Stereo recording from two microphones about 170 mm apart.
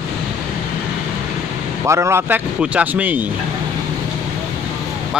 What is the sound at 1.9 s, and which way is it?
Speech, 15° right (ahead or behind).